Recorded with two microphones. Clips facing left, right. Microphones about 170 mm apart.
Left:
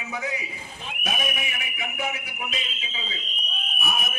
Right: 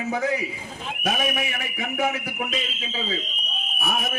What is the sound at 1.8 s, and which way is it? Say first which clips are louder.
Speech: right 6 dB; 50° right (ahead or behind).